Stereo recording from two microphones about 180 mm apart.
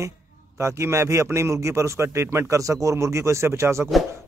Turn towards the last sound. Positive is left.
turn(degrees=-15)  # may be behind; listen again after turning